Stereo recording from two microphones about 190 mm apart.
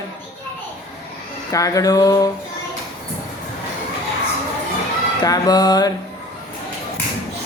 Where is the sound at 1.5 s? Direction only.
15° left (ahead or behind).